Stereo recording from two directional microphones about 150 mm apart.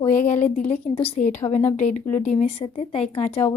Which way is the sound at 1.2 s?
60° left (ahead or behind).